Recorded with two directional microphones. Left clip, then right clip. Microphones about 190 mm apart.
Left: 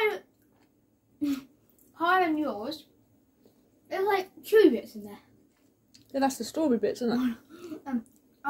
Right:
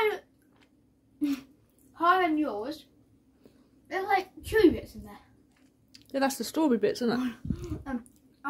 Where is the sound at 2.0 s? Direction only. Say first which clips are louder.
Right 1 dB; 10° right (ahead or behind).